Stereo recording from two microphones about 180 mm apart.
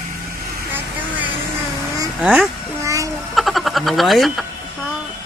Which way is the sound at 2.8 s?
15° right (ahead or behind).